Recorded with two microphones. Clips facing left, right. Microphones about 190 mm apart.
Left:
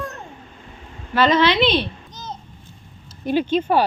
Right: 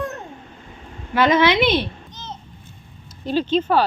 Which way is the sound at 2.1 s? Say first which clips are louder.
Left 2 dB; 40° left (ahead or behind).